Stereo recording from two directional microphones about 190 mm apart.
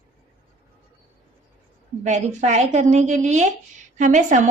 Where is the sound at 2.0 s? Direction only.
40° right (ahead or behind).